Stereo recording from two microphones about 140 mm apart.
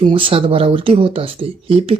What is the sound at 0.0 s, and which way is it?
Speech, 40° right (ahead or behind).